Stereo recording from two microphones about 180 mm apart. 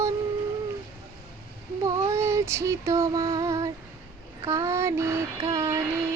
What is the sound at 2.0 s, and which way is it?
Female singing, 15° right (ahead or behind).